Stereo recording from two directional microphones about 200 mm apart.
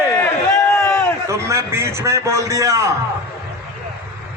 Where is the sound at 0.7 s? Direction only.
15° left (ahead or behind).